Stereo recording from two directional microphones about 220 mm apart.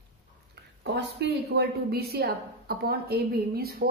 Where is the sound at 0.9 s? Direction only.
50° right (ahead or behind).